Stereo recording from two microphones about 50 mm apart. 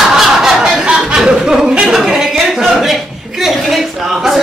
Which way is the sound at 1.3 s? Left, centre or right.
Centre.